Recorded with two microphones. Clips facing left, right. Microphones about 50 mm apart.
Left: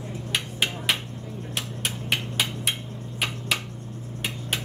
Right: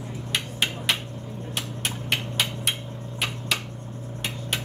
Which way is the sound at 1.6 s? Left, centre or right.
Centre.